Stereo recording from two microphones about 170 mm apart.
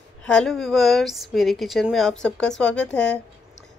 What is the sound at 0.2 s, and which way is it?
Speech, 5° left (ahead or behind).